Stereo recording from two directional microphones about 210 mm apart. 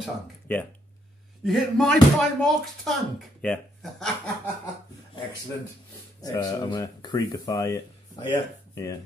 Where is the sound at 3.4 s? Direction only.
5° left (ahead or behind).